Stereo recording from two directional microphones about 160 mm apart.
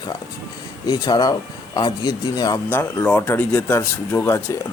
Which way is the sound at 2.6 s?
10° left (ahead or behind).